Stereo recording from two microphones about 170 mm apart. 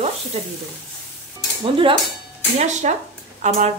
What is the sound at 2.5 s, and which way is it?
Frying, 40° right (ahead or behind).